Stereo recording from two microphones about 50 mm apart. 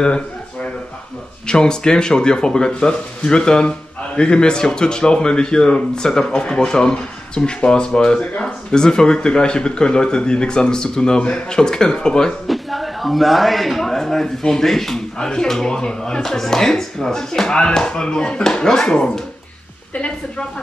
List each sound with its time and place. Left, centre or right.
0.0 s a sound: left
1.5 s speech: centre
8.2 s a woman's voice: left
8.7 s speech: centre
12.4 s a man's voice: centre; by 20.4 s left